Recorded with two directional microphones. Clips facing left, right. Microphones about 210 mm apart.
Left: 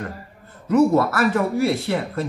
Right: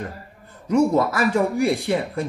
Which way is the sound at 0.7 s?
15° right (ahead or behind).